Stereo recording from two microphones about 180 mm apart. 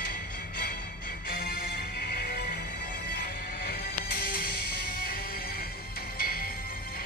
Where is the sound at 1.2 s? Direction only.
55° left (ahead or behind).